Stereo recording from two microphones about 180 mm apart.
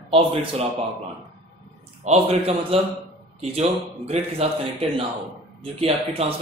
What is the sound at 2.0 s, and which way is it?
A man's voice, 35° right (ahead or behind).